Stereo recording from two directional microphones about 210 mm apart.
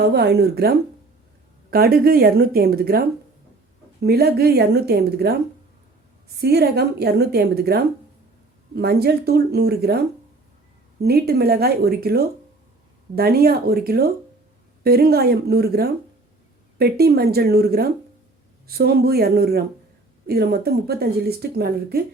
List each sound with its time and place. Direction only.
0.0 s a woman's voice: 50° right (ahead or behind)
6.4 s a woman's voice: 50° right (ahead or behind)